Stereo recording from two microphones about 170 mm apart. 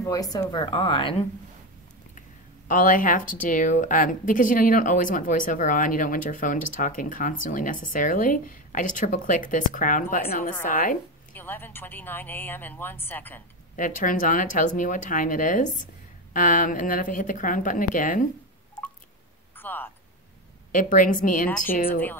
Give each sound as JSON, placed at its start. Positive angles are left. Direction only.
{"t": 0.0, "sound": "a woman's voice", "side_deg": 20}
{"t": 2.7, "sound": "speech", "side_deg": 50}
{"t": 11.3, "sound": "speech", "side_deg": 10}
{"t": 13.7, "sound": "speech", "side_deg": 50}
{"t": 19.5, "sound": "a sound", "side_deg": 10}
{"t": 20.7, "sound": "speech", "side_deg": 50}